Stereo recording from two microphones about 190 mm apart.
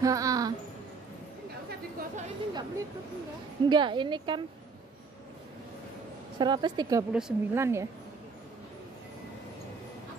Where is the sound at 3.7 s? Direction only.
25° right (ahead or behind).